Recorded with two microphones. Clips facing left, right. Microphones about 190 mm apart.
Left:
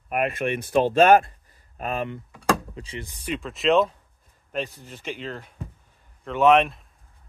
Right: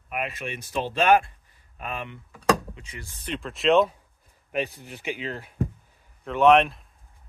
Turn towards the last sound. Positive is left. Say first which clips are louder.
# even
turn(degrees=0)  # may be behind; listen again after turning